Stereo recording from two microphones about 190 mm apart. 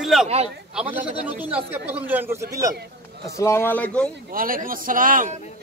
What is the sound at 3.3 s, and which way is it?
Speech, 15° left (ahead or behind).